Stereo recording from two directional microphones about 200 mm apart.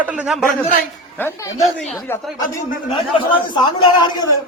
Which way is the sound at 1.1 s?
10° left (ahead or behind).